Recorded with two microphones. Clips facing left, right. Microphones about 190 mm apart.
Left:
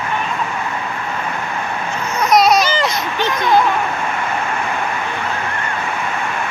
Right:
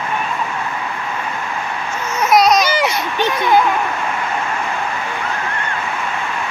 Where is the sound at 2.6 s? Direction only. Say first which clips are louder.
Right 1 dB; 15° right (ahead or behind).